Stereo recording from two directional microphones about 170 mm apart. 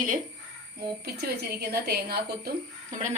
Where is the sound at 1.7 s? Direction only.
65° right (ahead or behind).